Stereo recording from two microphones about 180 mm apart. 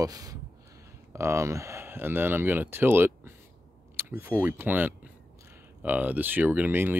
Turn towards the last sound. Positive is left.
turn(degrees=-10)  # may be behind; listen again after turning